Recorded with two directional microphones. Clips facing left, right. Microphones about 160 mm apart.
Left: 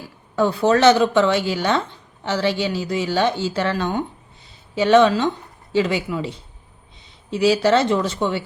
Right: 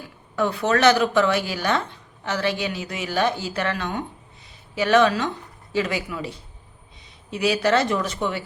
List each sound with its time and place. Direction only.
0.3 s a woman's voice: 30° left (ahead or behind)